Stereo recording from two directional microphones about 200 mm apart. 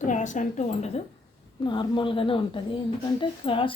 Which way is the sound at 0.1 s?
40° left (ahead or behind).